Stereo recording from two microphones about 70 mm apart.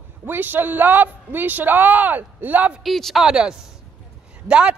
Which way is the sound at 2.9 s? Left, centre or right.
Centre.